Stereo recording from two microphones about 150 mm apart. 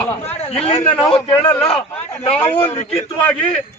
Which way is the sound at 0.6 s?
40° left (ahead or behind).